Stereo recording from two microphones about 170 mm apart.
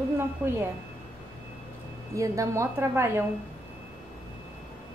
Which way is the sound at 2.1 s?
20° right (ahead or behind).